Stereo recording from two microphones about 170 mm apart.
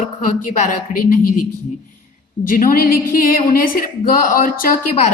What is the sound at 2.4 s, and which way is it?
A woman's voice, 55° left (ahead or behind).